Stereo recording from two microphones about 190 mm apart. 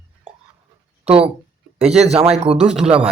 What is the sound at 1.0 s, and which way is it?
Speech, 30° right (ahead or behind).